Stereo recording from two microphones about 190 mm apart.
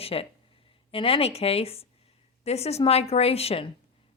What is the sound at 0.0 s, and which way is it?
A woman's voice, 30° left (ahead or behind).